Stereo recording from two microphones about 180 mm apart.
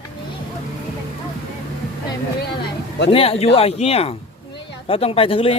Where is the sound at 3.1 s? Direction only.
35° left (ahead or behind).